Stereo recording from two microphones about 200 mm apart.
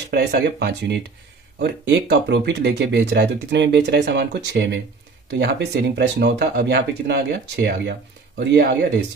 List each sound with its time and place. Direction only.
0.1 s speech: 55° right (ahead or behind)